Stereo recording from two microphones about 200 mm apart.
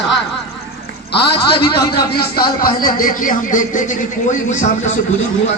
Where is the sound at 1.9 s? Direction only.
50° left (ahead or behind); by 4.9 s 35° left (ahead or behind).